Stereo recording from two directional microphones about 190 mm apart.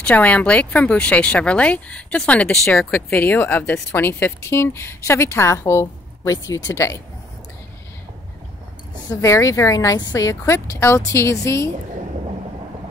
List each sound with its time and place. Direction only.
0.0 s speech: 10° left (ahead or behind)
9.1 s speech: 15° left (ahead or behind)